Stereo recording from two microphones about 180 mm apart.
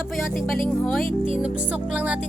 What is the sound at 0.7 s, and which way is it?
Speech, 5° left (ahead or behind).